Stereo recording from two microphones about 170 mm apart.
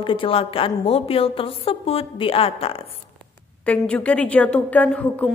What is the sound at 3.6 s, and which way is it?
A woman's voice, 10° left (ahead or behind).